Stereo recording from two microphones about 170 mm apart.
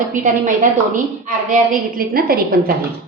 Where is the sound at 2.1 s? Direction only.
60° right (ahead or behind).